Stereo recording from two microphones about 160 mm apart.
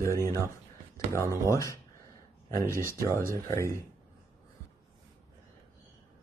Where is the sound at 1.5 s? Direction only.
20° left (ahead or behind).